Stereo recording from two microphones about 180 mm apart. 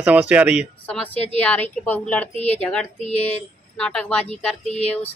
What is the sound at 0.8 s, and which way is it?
A woman's voice, 10° left (ahead or behind).